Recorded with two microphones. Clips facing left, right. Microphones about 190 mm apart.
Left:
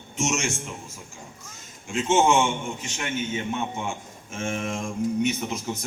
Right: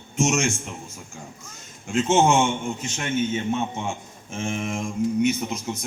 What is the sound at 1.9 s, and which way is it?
Speech, 45° right (ahead or behind).